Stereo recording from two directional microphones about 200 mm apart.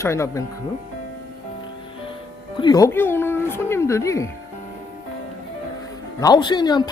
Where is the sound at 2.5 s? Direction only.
20° left (ahead or behind).